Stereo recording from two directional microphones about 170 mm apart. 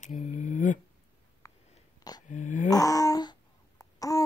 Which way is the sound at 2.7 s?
20° left (ahead or behind).